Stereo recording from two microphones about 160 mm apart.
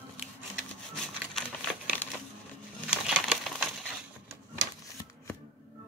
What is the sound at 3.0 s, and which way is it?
Crumpling, centre (ahead or behind).